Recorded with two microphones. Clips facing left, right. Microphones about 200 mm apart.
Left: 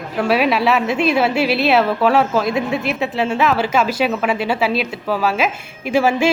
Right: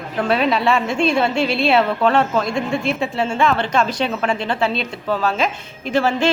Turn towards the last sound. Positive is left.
turn(degrees=10)  # may be behind; listen again after turning